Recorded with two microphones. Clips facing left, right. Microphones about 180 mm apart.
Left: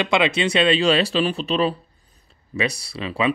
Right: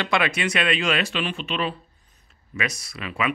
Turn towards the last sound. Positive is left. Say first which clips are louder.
# left 5 dB
turn(degrees=30)  # may be behind; listen again after turning